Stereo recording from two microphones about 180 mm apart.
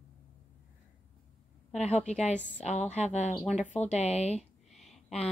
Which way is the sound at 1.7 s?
40° left (ahead or behind).